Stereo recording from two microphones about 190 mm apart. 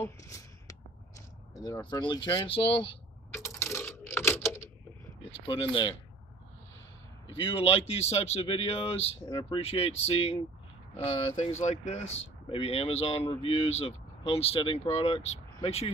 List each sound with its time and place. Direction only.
0.0 s a sound: 15° left (ahead or behind)
1.5 s speech: 20° left (ahead or behind)
3.3 s typing: 15° left (ahead or behind)
5.4 s speech: 30° left (ahead or behind)
7.3 s speech: 30° left (ahead or behind)
11.6 s speech: 35° left (ahead or behind)